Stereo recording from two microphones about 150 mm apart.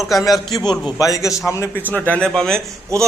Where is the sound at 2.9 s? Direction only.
20° right (ahead or behind).